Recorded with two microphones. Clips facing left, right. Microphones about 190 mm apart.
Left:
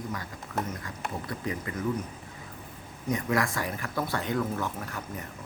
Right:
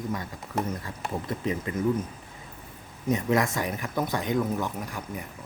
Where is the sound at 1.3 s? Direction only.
25° right (ahead or behind).